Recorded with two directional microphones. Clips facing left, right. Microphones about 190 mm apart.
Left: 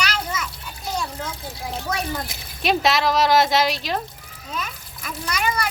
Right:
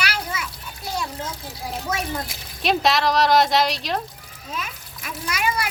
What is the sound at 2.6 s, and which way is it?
Speech, centre (ahead or behind).